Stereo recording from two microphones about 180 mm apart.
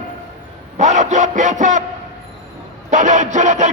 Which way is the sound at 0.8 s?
40° right (ahead or behind).